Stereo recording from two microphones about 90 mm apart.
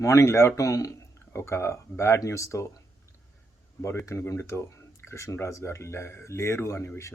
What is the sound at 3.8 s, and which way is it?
Speech, 30° left (ahead or behind).